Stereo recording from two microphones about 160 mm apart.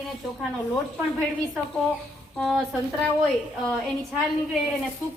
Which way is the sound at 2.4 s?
Centre (ahead or behind).